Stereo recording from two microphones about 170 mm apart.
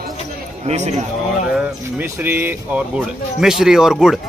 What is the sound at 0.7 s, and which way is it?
Speech, 40° right (ahead or behind).